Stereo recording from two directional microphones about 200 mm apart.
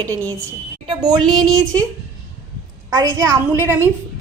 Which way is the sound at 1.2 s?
Centre (ahead or behind).